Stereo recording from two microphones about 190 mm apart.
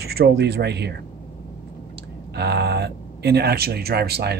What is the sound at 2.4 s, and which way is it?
Speech, 60° right (ahead or behind).